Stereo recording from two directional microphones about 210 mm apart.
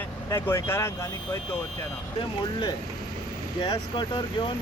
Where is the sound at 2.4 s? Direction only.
20° left (ahead or behind).